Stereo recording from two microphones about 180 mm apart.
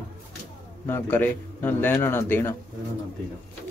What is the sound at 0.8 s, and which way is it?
A man's voice, 10° left (ahead or behind).